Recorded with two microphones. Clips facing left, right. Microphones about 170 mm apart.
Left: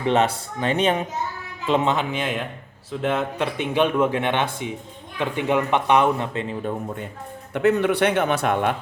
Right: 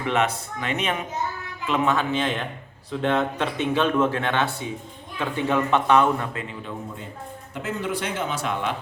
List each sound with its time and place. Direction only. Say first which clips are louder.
0.0 s speech: left 4 dB; 30° left (ahead or behind)
7.5 s speech: left 10 dB; 65° left (ahead or behind)